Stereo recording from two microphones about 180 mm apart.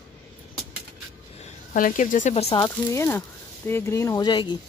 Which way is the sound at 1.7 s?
45° left (ahead or behind).